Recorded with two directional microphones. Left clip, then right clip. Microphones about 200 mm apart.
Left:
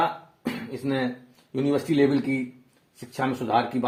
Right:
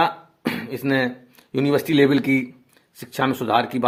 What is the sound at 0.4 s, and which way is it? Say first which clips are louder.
Throat clearing: right 6 dB; 40° right (ahead or behind).